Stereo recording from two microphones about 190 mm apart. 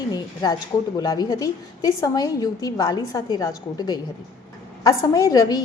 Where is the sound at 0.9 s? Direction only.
20° left (ahead or behind).